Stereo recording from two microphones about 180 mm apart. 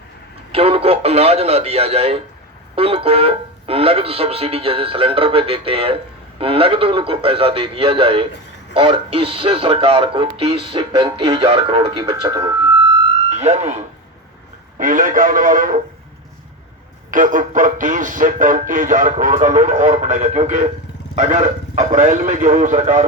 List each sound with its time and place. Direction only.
0.5 s speech: 30° right (ahead or behind)
13.3 s speech: 35° right (ahead or behind)
17.1 s speech: 45° right (ahead or behind)